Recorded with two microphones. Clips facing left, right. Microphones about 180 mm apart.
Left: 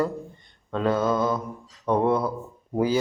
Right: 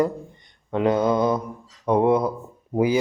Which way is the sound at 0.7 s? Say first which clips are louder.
Right 3 dB; 20° right (ahead or behind).